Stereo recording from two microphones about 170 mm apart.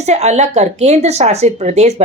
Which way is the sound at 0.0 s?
40° right (ahead or behind).